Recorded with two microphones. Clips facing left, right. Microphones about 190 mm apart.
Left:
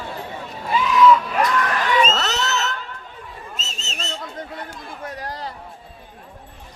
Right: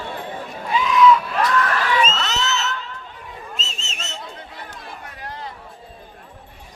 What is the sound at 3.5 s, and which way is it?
Whistle, 35° left (ahead or behind).